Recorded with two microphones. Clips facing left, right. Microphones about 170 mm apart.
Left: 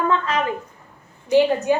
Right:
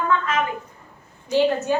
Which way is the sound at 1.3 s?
15° left (ahead or behind).